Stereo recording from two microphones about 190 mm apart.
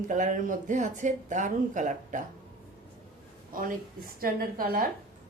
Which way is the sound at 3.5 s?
45° right (ahead or behind).